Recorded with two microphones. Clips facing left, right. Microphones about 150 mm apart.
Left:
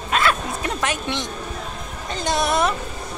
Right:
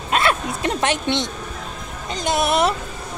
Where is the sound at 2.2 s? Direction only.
25° right (ahead or behind).